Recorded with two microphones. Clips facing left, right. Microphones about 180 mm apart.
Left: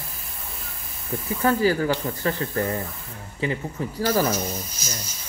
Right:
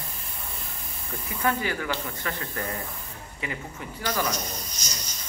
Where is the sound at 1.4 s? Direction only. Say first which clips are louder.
Left 7 dB; 35° left (ahead or behind).